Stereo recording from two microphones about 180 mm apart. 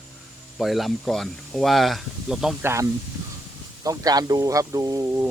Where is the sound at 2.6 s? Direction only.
15° right (ahead or behind).